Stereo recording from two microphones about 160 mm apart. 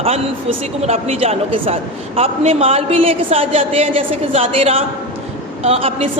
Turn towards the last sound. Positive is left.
turn(degrees=-40)  # may be behind; listen again after turning